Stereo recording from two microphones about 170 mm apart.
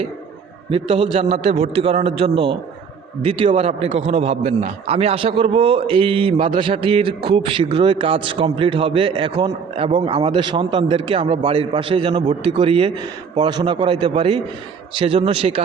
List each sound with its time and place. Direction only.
0.7 s a man's voice: 30° right (ahead or behind)